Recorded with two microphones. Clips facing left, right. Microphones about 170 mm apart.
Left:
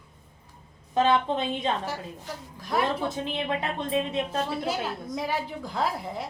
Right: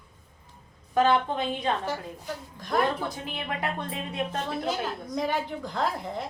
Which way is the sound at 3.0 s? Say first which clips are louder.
Left 5 dB; 25° left (ahead or behind).